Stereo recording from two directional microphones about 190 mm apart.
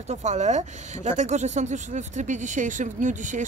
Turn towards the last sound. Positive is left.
turn(degrees=-40)  # may be behind; listen again after turning